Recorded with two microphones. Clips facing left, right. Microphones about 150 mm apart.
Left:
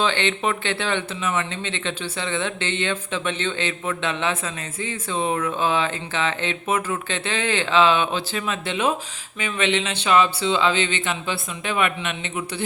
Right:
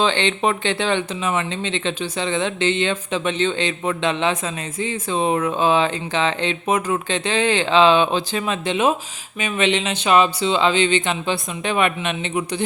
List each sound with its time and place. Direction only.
0.0 s speech: 20° right (ahead or behind)